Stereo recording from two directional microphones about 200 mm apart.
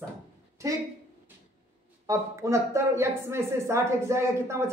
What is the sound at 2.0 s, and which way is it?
A woman's voice, 15° right (ahead or behind).